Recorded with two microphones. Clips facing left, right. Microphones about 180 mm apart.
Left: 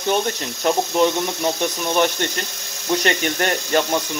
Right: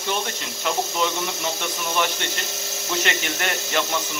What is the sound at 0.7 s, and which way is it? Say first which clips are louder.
Speech: left 7 dB; 45° left (ahead or behind).